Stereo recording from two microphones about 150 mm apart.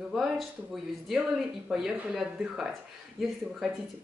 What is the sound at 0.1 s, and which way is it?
Speech, centre (ahead or behind).